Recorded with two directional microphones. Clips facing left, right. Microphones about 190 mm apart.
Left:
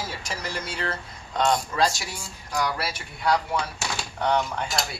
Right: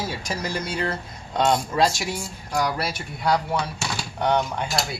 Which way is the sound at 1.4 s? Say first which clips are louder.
Right 2 dB; 25° right (ahead or behind).